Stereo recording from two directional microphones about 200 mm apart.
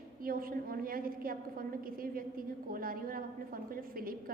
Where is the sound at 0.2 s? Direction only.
45° right (ahead or behind).